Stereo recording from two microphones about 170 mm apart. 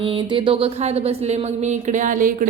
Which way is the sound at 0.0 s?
30° right (ahead or behind).